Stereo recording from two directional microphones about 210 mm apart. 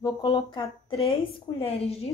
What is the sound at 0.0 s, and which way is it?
Speech, 20° left (ahead or behind).